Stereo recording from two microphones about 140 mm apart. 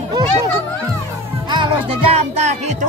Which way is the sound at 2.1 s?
55° right (ahead or behind).